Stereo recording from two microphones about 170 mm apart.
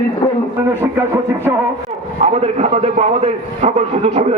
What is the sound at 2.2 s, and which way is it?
A man's voice, 40° right (ahead or behind).